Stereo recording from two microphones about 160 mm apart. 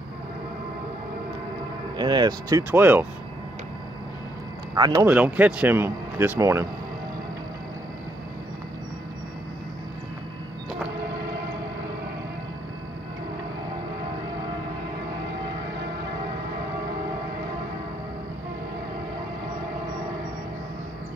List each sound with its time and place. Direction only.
2.0 s speech: 25° right (ahead or behind)
2.7 s speech: 15° right (ahead or behind)
4.7 s speech: 25° right (ahead or behind)
5.0 s speech: 10° right (ahead or behind)